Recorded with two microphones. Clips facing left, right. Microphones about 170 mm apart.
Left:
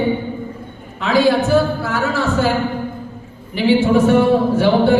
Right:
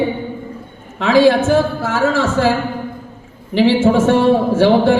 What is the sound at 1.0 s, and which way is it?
Speech, 90° right.